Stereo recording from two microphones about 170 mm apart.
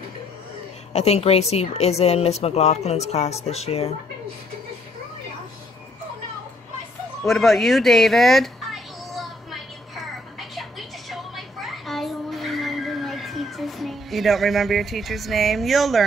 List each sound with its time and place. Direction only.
0.9 s speech: 40° left (ahead or behind)
7.2 s children playing: centre (ahead or behind)
10.5 s a sound: centre (ahead or behind)